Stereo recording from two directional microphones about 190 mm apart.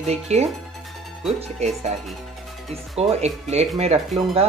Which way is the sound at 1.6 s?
35° right (ahead or behind).